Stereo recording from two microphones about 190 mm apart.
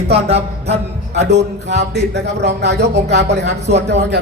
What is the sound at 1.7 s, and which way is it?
A man's voice, 65° right (ahead or behind).